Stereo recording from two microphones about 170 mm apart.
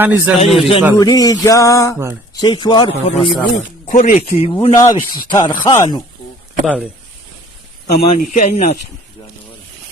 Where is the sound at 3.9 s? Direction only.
50° left (ahead or behind).